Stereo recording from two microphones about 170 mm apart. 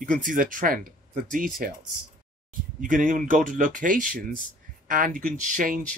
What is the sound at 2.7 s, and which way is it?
Speech, 50° right (ahead or behind).